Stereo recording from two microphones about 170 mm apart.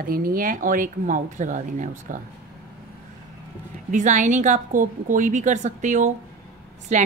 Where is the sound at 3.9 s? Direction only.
45° right (ahead or behind).